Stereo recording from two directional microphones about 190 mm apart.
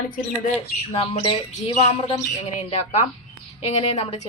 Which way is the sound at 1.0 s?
30° left (ahead or behind).